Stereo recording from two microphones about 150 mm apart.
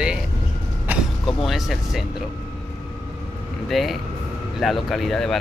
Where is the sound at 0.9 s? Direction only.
10° right (ahead or behind).